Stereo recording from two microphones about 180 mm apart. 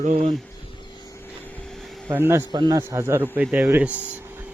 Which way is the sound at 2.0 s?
15° right (ahead or behind).